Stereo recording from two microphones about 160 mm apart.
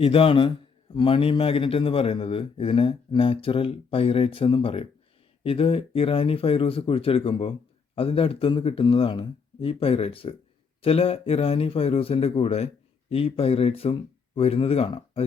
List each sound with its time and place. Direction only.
0.0 s a man's voice: 35° left (ahead or behind)